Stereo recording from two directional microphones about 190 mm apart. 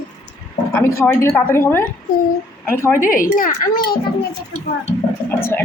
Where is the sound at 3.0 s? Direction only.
45° left (ahead or behind).